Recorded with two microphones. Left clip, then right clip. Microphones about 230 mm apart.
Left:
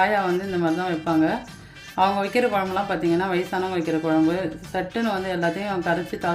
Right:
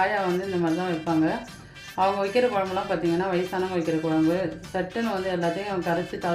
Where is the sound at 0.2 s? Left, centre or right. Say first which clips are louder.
Left 2 dB; centre.